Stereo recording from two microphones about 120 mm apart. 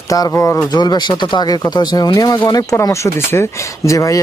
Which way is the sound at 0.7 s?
35° left (ahead or behind).